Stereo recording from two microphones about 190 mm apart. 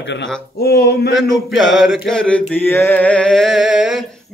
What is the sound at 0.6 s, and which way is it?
Speech, 55° left (ahead or behind).